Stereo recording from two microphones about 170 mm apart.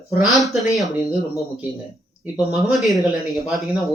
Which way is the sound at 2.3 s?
Centre (ahead or behind).